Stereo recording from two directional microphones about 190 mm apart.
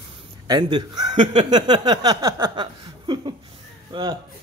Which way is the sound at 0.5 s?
25° right (ahead or behind).